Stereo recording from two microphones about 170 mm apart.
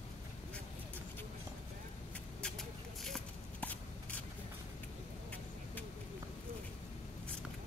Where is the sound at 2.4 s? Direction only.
Centre (ahead or behind).